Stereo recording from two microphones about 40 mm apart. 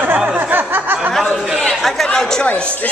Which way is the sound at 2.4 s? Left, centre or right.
Left.